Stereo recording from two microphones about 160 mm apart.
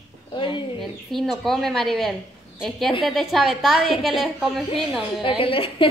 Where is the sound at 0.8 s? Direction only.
Centre (ahead or behind).